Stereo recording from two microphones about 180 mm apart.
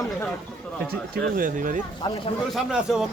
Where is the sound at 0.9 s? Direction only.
55° right (ahead or behind).